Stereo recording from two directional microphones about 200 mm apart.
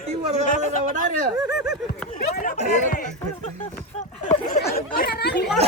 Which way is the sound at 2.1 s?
40° left (ahead or behind).